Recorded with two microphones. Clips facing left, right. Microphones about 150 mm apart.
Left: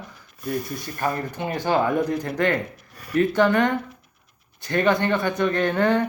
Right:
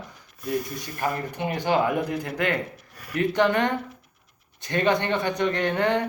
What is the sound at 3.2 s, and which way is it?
Speech, 20° right (ahead or behind).